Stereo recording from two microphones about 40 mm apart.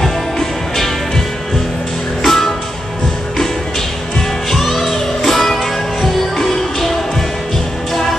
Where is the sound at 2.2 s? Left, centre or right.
Centre.